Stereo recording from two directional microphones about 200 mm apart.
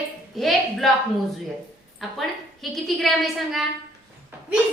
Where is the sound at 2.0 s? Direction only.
Centre (ahead or behind).